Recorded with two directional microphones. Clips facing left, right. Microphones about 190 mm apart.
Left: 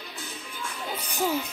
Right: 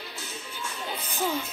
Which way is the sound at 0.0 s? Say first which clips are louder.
Even; 5° right (ahead or behind).